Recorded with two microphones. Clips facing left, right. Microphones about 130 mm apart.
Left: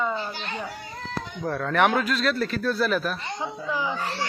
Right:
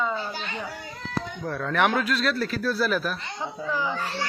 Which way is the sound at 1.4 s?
Centre (ahead or behind).